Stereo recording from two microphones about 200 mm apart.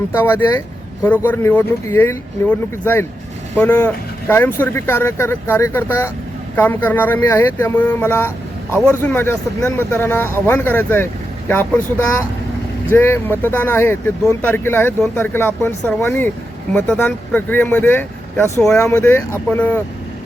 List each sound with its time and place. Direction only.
0.2 s speech: 10° left (ahead or behind)